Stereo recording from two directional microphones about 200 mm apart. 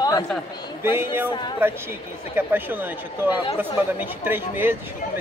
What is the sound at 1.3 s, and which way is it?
Speech, 20° left (ahead or behind).